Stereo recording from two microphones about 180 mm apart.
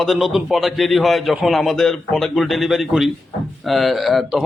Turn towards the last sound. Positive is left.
turn(degrees=0)  # may be behind; listen again after turning